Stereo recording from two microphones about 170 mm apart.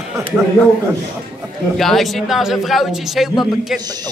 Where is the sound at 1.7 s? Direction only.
Centre (ahead or behind).